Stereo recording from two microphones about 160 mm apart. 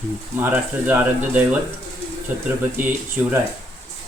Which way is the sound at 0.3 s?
10° right (ahead or behind).